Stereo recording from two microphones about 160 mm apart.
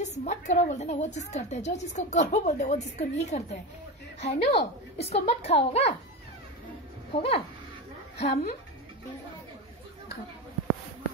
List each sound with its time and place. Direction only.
0.0 s a woman's voice: 45° left (ahead or behind)
7.1 s a woman's voice: 35° left (ahead or behind)